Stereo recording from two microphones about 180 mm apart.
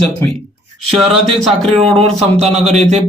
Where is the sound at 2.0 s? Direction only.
35° right (ahead or behind).